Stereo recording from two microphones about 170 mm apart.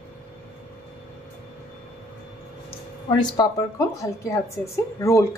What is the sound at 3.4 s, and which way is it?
Speech, 20° left (ahead or behind).